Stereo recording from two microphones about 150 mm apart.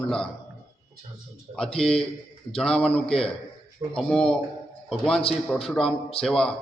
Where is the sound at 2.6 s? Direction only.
5° left (ahead or behind).